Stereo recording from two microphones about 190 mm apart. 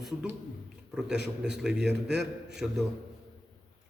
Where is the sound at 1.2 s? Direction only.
65° right (ahead or behind).